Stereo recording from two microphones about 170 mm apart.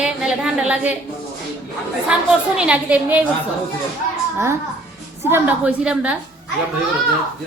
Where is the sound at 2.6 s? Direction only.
5° right (ahead or behind).